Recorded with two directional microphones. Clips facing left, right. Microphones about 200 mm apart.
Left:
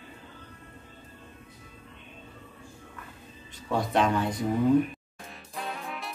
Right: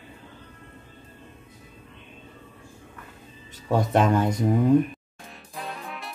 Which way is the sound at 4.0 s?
45° right (ahead or behind).